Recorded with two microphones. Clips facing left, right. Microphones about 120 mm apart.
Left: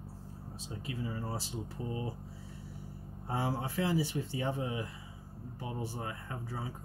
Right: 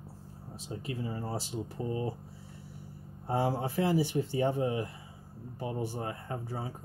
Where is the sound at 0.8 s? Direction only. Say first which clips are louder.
Right 2 dB; 30° right (ahead or behind).